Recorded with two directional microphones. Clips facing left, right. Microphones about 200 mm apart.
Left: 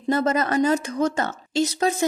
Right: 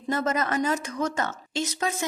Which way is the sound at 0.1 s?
30° left (ahead or behind).